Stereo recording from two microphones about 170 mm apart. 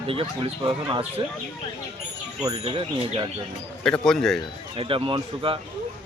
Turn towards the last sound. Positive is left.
turn(degrees=-30)  # may be behind; listen again after turning